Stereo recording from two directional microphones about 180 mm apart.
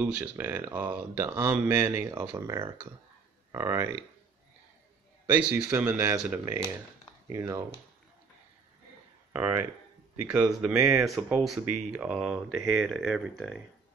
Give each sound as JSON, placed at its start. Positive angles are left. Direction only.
{"t": 0.0, "sound": "speech", "side_deg": -10}
{"t": 5.2, "sound": "speech", "side_deg": -10}
{"t": 9.3, "sound": "speech", "side_deg": -10}